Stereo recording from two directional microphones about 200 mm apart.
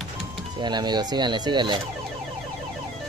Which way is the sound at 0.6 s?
20° right (ahead or behind).